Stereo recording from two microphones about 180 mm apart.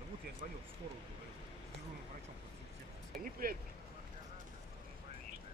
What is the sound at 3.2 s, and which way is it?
Speech, 50° right (ahead or behind).